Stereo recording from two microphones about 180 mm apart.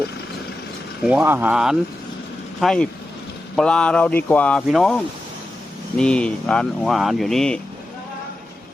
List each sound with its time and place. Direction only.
1.0 s speech: 10° right (ahead or behind)